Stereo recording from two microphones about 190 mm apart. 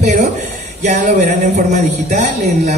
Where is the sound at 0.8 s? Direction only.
40° right (ahead or behind).